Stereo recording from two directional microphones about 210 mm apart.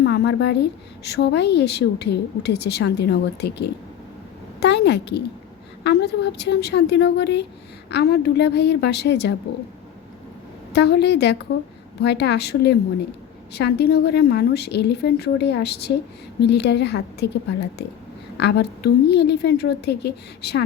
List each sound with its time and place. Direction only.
0.0 s a woman's voice: 50° left (ahead or behind)
10.7 s a woman's voice: 55° left (ahead or behind)